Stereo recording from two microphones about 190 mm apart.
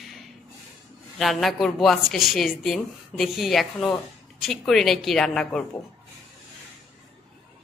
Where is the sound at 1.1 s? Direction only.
Centre (ahead or behind).